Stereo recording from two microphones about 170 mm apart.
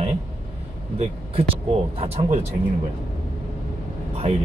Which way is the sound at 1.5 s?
35° right (ahead or behind).